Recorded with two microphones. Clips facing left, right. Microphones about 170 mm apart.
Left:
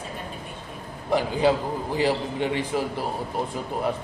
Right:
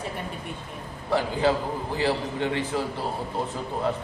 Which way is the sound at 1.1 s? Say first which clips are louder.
Left 2 dB; 15° left (ahead or behind).